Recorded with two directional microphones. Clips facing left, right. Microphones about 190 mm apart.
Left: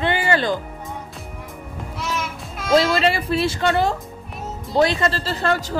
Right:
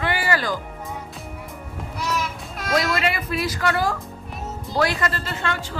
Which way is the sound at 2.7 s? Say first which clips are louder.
Left 6 dB; 30° left (ahead or behind).